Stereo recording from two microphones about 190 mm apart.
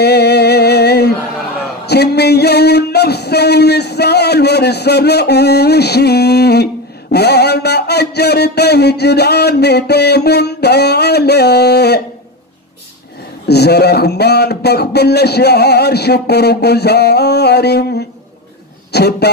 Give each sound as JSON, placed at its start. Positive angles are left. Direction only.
{"t": 0.0, "sound": "music", "side_deg": 60}
{"t": 13.5, "sound": "a man's voice", "side_deg": 60}